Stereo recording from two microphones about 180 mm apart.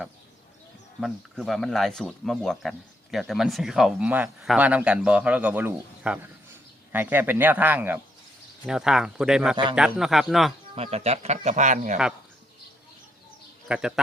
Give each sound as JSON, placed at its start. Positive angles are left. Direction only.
{"t": 1.0, "sound": "speech", "side_deg": 0}
{"t": 10.8, "sound": "speech", "side_deg": -35}
{"t": 13.7, "sound": "speech", "side_deg": -5}